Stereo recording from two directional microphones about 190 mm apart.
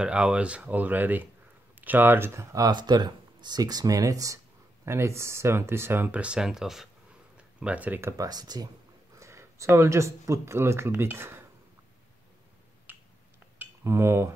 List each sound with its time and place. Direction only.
0.0 s speech: 5° right (ahead or behind)
13.6 s cutlery: 15° right (ahead or behind)